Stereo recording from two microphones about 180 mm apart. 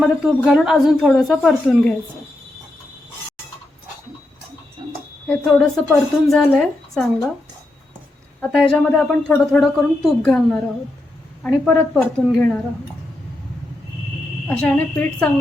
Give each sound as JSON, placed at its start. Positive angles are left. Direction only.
{"t": 0.0, "sound": "a woman's voice", "side_deg": 0}
{"t": 4.8, "sound": "a sound", "side_deg": -25}
{"t": 5.3, "sound": "a woman's voice", "side_deg": 0}
{"t": 8.4, "sound": "a woman's voice", "side_deg": 5}
{"t": 14.4, "sound": "a woman's voice", "side_deg": 5}